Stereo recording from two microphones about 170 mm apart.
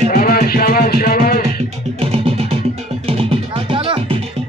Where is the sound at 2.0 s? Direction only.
35° right (ahead or behind).